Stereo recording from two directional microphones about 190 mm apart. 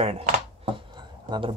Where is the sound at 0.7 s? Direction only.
25° right (ahead or behind).